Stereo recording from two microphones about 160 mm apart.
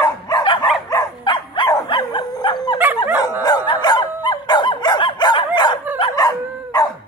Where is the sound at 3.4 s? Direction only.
25° left (ahead or behind).